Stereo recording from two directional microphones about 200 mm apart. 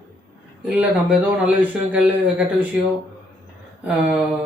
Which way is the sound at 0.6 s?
5° right (ahead or behind).